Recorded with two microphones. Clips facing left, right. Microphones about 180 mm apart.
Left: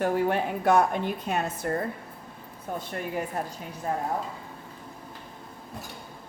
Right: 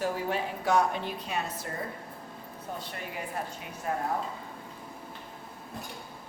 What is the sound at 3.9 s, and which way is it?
Speech, 30° left (ahead or behind).